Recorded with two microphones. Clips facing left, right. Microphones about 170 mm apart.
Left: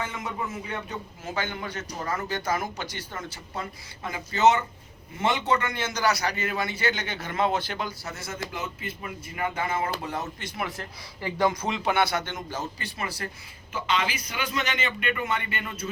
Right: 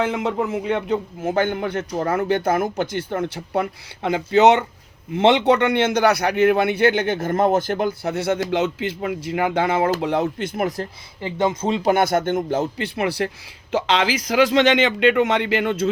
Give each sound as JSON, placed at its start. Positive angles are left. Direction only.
{"t": 0.0, "sound": "a man's voice", "side_deg": -70}
{"t": 8.4, "sound": "speech", "side_deg": -80}
{"t": 11.2, "sound": "speech", "side_deg": -25}
{"t": 11.9, "sound": "a man's voice", "side_deg": -45}
{"t": 13.7, "sound": "speech", "side_deg": -90}